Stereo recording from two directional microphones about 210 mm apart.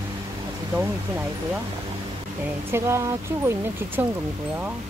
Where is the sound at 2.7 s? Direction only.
15° right (ahead or behind).